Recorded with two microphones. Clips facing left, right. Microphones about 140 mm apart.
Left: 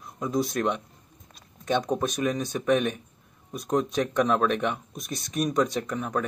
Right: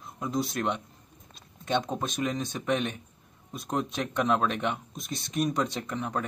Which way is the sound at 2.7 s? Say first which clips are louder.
Left 5 dB; 55° left (ahead or behind).